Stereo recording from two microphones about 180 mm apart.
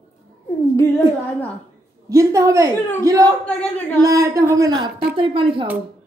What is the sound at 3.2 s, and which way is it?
Speech, 5° left (ahead or behind).